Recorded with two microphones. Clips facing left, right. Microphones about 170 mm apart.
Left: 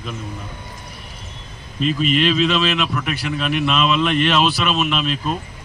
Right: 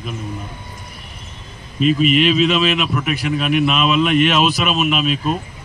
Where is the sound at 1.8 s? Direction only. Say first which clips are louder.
Right 4 dB; 10° right (ahead or behind).